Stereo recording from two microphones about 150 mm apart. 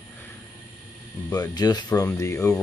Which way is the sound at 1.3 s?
25° left (ahead or behind).